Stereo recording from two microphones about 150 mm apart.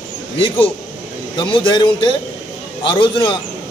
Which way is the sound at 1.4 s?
35° left (ahead or behind).